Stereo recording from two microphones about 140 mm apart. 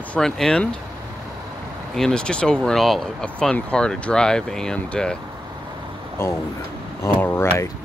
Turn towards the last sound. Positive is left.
turn(degrees=15)  # may be behind; listen again after turning